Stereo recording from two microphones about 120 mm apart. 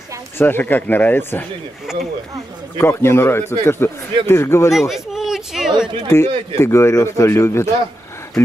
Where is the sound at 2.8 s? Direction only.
20° left (ahead or behind).